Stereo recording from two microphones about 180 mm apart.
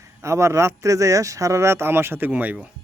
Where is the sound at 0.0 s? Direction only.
15° right (ahead or behind).